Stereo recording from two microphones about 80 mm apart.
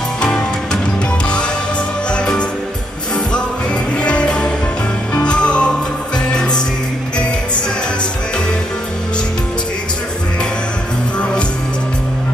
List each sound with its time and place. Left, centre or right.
2.0 s music: centre
4.0 s music: centre